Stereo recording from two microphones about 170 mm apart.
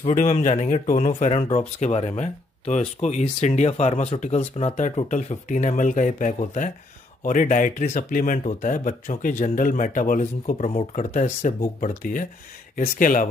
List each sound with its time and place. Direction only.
0.0 s speech: 40° left (ahead or behind)